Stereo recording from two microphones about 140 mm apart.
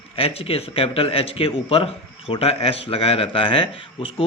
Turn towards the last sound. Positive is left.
turn(degrees=40)  # may be behind; listen again after turning